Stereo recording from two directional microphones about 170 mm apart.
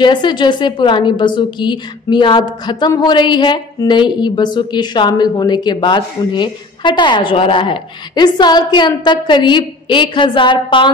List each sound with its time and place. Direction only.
0.0 s a woman's voice: 25° left (ahead or behind)